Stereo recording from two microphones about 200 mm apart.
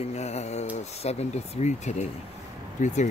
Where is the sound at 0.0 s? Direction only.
35° left (ahead or behind).